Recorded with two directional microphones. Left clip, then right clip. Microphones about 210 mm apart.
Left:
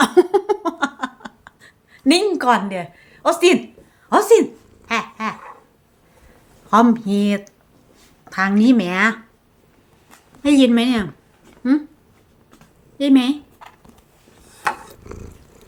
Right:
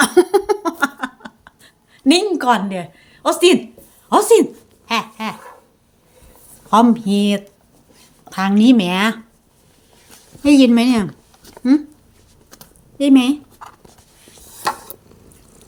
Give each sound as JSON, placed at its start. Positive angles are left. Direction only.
{"t": 0.0, "sound": "a sound", "side_deg": -5}
{"t": 4.1, "sound": "speech", "side_deg": -15}
{"t": 6.7, "sound": "speech", "side_deg": -15}
{"t": 10.4, "sound": "speech", "side_deg": -15}
{"t": 13.0, "sound": "a sound", "side_deg": -10}
{"t": 15.1, "sound": "purr", "side_deg": 30}